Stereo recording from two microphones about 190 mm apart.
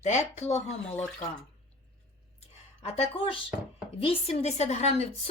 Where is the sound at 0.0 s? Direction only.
35° left (ahead or behind).